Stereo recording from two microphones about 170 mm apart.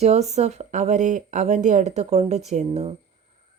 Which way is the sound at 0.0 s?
40° right (ahead or behind).